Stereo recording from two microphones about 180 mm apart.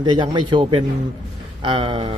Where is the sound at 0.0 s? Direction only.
25° right (ahead or behind).